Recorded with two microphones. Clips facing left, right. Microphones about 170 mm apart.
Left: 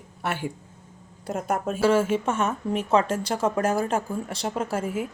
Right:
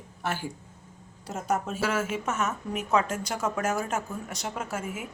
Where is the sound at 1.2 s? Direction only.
50° left (ahead or behind).